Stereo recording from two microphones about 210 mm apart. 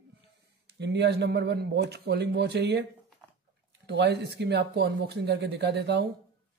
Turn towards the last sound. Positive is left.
turn(degrees=-50)  # may be behind; listen again after turning